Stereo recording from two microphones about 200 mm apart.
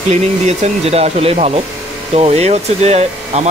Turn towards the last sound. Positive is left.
turn(degrees=-35)  # may be behind; listen again after turning